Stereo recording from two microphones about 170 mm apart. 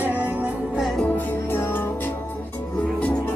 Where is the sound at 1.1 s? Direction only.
10° left (ahead or behind).